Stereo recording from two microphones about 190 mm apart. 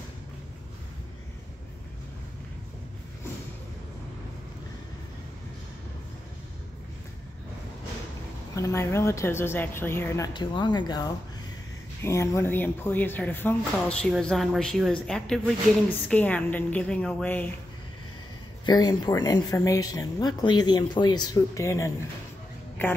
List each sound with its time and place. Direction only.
8.5 s a woman's voice: 15° left (ahead or behind)
18.7 s speech: 20° left (ahead or behind)